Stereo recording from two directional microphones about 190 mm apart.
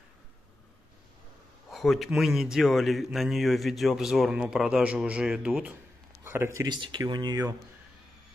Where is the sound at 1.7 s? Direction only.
Centre (ahead or behind); by 7.5 s 20° right (ahead or behind).